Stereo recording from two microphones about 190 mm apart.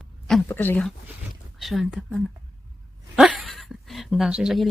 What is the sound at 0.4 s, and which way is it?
Speech, 10° left (ahead or behind).